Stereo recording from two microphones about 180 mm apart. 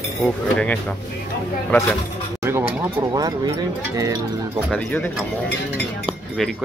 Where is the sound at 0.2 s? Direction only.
5° left (ahead or behind).